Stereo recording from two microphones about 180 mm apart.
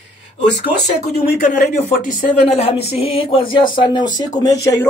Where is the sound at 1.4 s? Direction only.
45° left (ahead or behind).